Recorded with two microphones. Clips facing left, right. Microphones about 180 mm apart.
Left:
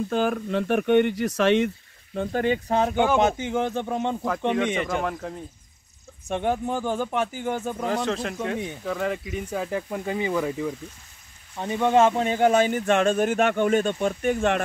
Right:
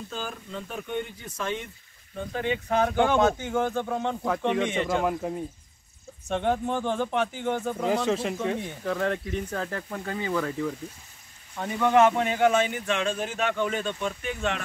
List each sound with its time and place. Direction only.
0.1 s speech: 60° left (ahead or behind)
2.7 s speech: 25° left (ahead or behind)
4.5 s a man's voice: centre (ahead or behind)
6.2 s speech: 10° left (ahead or behind)
7.9 s a man's voice: 5° right (ahead or behind); by 14.6 s 50° left (ahead or behind)